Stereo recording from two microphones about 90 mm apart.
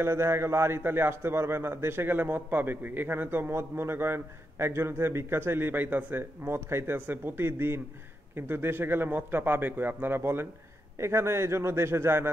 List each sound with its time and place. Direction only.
0.0 s a man's voice: 30° right (ahead or behind)